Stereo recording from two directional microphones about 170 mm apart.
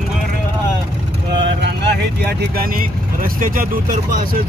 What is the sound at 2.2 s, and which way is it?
Speech, 65° right (ahead or behind).